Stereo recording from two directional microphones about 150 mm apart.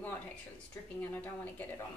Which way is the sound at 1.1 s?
10° left (ahead or behind).